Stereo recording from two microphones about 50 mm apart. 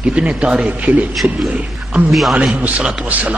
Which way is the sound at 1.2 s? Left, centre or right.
Right.